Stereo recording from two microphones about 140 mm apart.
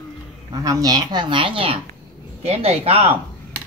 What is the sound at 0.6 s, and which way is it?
Speech, 25° right (ahead or behind).